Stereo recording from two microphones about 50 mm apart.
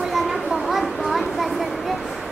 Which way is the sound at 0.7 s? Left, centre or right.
Centre.